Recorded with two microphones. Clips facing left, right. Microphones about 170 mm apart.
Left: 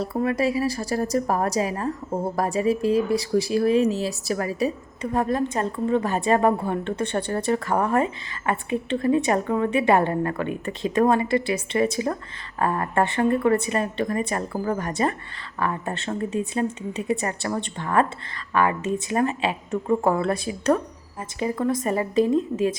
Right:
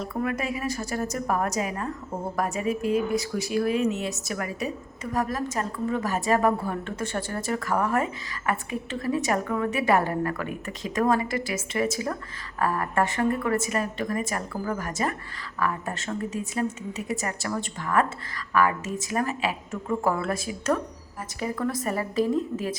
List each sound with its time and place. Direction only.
0.0 s a woman's voice: 30° left (ahead or behind)